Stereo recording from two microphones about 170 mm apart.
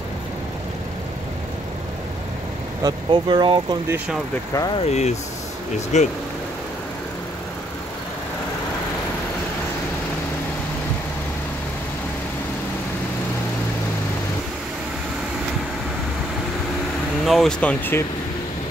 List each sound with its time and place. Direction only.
2.8 s speech: 25° right (ahead or behind)
4.8 s speech: 40° left (ahead or behind)
17.3 s speech: 5° left (ahead or behind)